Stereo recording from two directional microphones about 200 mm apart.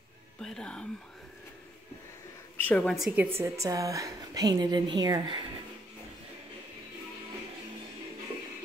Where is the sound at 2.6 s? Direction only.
5° left (ahead or behind); by 5.5 s 20° right (ahead or behind).